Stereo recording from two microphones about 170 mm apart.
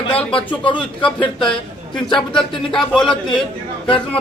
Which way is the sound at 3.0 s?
30° left (ahead or behind).